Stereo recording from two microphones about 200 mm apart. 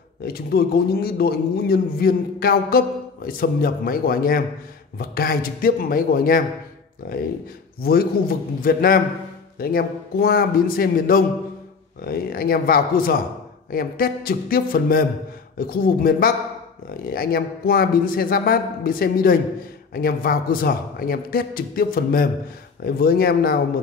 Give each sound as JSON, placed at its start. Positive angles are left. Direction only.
{"t": 0.2, "sound": "a man's voice", "side_deg": 50}
{"t": 7.8, "sound": "a man's voice", "side_deg": 50}